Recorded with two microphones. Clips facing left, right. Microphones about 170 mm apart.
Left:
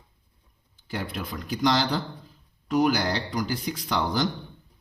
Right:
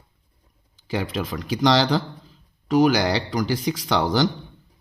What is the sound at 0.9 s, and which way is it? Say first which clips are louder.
Speech: right 6 dB; 90° right.